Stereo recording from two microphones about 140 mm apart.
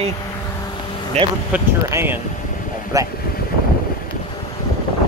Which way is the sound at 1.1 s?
50° right (ahead or behind).